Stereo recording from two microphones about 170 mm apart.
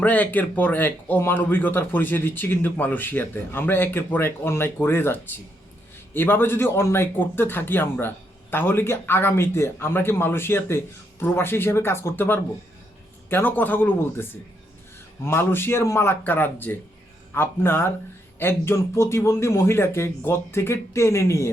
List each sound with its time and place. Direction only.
0.0 s speech: 10° left (ahead or behind)